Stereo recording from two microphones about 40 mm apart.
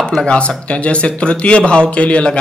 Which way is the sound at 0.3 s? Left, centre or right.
Left.